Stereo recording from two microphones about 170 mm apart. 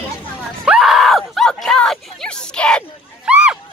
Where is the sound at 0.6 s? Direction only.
5° right (ahead or behind).